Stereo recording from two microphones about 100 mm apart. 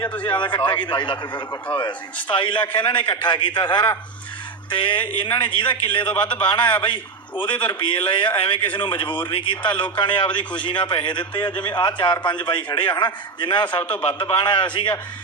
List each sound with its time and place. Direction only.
0.0 s a man's voice: 15° left (ahead or behind)
0.3 s a man's voice: 50° left (ahead or behind)